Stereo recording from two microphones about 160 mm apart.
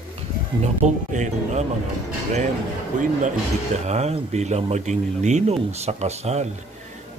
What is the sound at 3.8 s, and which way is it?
Speech, 45° right (ahead or behind).